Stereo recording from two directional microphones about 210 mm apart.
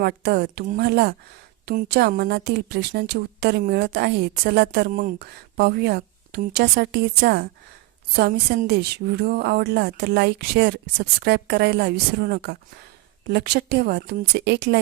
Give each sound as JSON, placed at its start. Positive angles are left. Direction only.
{"t": 0.0, "sound": "a woman's voice", "side_deg": -50}